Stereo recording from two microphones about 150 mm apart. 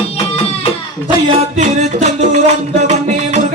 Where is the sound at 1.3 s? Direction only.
50° right (ahead or behind).